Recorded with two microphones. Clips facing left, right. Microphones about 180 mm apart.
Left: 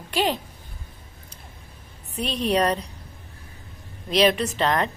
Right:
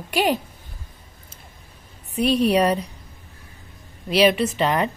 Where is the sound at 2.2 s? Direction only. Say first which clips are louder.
Right 5 dB; 10° right (ahead or behind).